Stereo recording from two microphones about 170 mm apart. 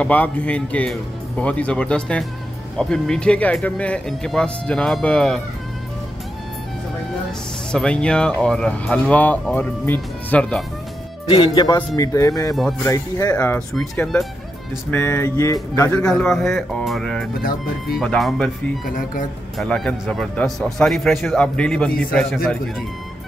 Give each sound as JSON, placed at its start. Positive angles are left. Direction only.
{"t": 0.0, "sound": "speech", "side_deg": 10}
{"t": 7.7, "sound": "speech", "side_deg": 5}
{"t": 11.2, "sound": "speech", "side_deg": 30}
{"t": 13.7, "sound": "speech", "side_deg": 5}
{"t": 15.9, "sound": "speech", "side_deg": 5}